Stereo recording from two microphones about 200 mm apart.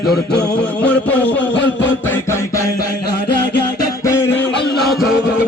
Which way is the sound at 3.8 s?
15° left (ahead or behind).